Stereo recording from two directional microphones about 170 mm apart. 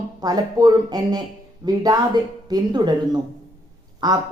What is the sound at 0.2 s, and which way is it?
Speech, 25° right (ahead or behind).